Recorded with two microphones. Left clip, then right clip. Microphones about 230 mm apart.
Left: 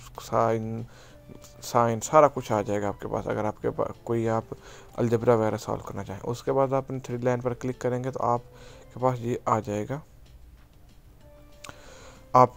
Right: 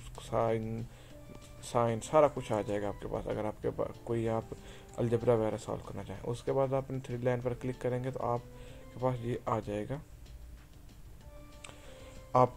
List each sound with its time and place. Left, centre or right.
0.1 s speech: left
11.6 s music: left